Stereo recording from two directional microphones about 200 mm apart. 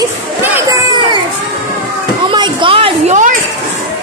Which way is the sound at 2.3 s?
25° right (ahead or behind).